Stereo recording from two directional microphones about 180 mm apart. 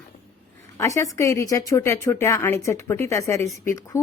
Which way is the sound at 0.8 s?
15° left (ahead or behind).